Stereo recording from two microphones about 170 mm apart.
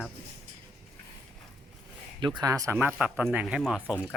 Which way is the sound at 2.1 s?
25° right (ahead or behind).